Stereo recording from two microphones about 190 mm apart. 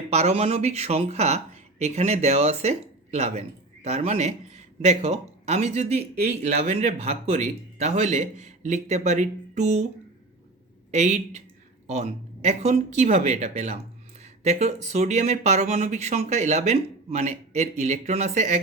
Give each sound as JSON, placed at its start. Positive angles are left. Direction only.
{"t": 0.1, "sound": "speech", "side_deg": -35}
{"t": 10.9, "sound": "speech", "side_deg": -35}